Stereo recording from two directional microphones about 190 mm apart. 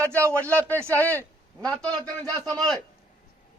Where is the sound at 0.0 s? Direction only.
10° left (ahead or behind).